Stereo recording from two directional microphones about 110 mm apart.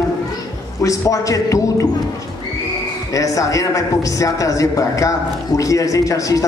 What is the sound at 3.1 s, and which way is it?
Speech, 30° left (ahead or behind).